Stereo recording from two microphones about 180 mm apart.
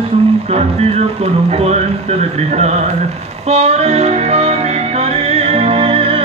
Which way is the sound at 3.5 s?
35° right (ahead or behind).